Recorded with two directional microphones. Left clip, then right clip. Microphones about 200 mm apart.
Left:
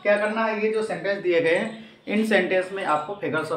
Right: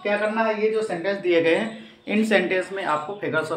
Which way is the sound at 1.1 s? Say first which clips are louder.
Right 1 dB; 25° right (ahead or behind).